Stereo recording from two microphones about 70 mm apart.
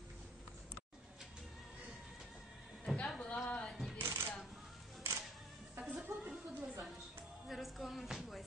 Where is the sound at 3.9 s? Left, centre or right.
Right.